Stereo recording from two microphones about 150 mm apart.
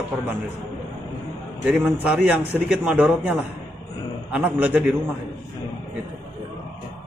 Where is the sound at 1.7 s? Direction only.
10° right (ahead or behind).